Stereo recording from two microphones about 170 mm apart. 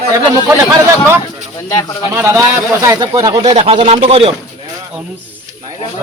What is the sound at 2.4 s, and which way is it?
A man's voice, 20° right (ahead or behind).